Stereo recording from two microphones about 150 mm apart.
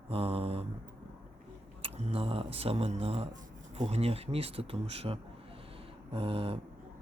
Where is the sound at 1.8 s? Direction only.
40° right (ahead or behind).